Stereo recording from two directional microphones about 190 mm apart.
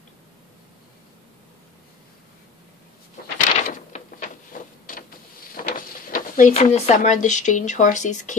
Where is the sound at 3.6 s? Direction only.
40° left (ahead or behind).